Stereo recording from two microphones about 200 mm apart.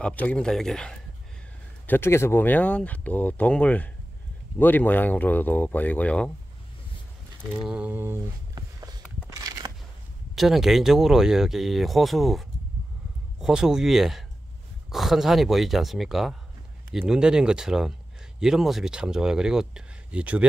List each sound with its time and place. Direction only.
0.0 s speech: 5° left (ahead or behind)
7.6 s a sound: 5° right (ahead or behind)
9.4 s crushing: 15° right (ahead or behind)
10.3 s speech: centre (ahead or behind)